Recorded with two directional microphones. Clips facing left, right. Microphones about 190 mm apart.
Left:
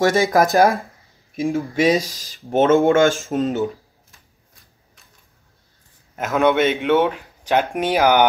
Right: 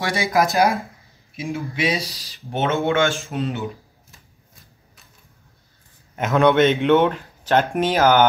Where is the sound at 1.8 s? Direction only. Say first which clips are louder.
Left 6 dB; 50° left (ahead or behind).